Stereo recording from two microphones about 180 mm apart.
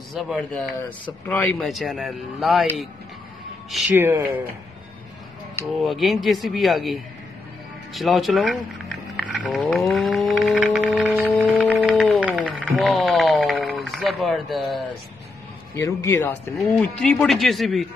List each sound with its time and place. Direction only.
0.1 s speech: centre (ahead or behind)
3.9 s speech: 15° right (ahead or behind)
5.7 s speech: centre (ahead or behind)
9.5 s a sound: centre (ahead or behind)
15.7 s speech: 15° left (ahead or behind)